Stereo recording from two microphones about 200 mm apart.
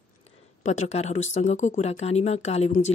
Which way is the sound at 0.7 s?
35° left (ahead or behind).